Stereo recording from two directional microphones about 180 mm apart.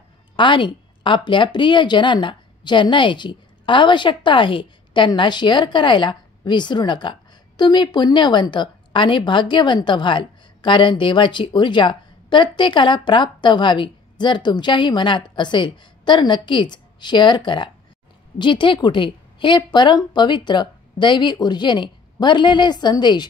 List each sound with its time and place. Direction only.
0.4 s speech: 25° left (ahead or behind)